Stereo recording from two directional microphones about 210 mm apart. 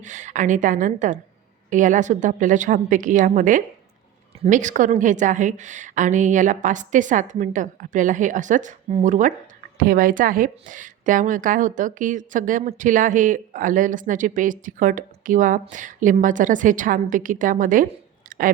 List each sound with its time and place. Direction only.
0.0 s a woman's voice: 35° right (ahead or behind)